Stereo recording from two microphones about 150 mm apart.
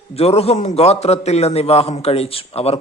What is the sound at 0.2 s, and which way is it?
A man's voice, 45° left (ahead or behind).